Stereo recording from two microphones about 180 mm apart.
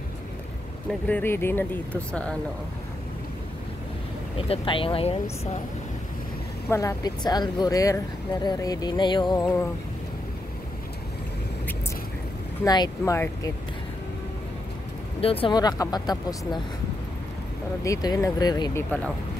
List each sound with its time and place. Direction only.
1.0 s speech: 10° left (ahead or behind)
4.4 s speech: 30° left (ahead or behind)
6.7 s speech: 15° left (ahead or behind)
12.6 s speech: 20° left (ahead or behind)
15.1 s speech: 30° left (ahead or behind)
17.8 s speech: 20° left (ahead or behind)